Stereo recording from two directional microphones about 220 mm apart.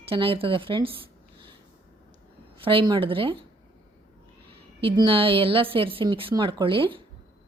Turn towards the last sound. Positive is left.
turn(degrees=-25)  # may be behind; listen again after turning